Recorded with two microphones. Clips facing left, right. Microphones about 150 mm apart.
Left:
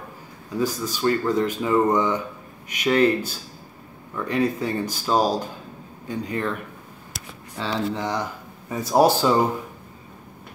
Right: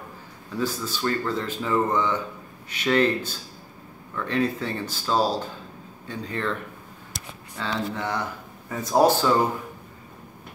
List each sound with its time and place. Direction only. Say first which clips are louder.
0.6 s speech: left 3 dB; 15° left (ahead or behind)
7.5 s speech: left 3 dB; 15° left (ahead or behind)